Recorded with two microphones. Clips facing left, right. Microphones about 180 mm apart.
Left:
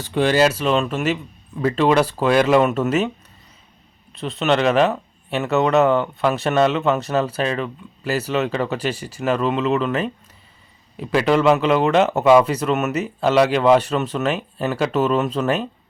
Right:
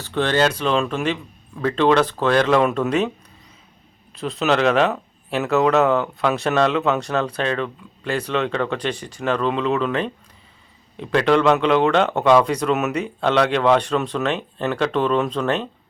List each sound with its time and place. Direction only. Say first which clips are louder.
0.0 s speech: left 2 dB; 10° left (ahead or behind)
4.1 s speech: even; centre (ahead or behind)